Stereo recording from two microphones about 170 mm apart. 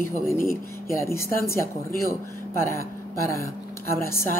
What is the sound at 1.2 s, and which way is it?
Speech, 60° left (ahead or behind).